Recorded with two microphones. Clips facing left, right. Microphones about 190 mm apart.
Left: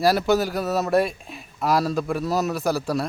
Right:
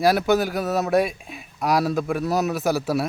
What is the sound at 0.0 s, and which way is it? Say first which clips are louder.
Speech: right 1 dB; centre (ahead or behind).